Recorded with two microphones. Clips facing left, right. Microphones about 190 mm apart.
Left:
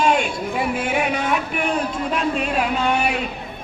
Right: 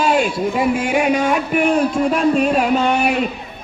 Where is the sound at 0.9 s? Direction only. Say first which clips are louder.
Right 5 dB; 45° right (ahead or behind).